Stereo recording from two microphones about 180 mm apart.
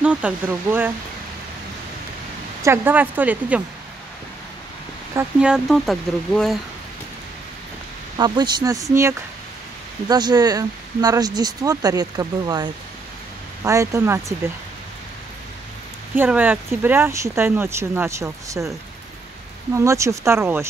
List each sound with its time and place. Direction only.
0.0 s speech: 5° right (ahead or behind)
2.6 s speech: 10° right (ahead or behind)
5.1 s speech: 5° right (ahead or behind)
8.2 s speech: 25° right (ahead or behind)
10.0 s speech: 20° right (ahead or behind)
13.7 s speech: 15° right (ahead or behind)
16.2 s speech: 10° right (ahead or behind)
19.7 s speech: 15° right (ahead or behind)